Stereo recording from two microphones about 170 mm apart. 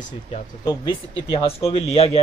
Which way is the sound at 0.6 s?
25° left (ahead or behind).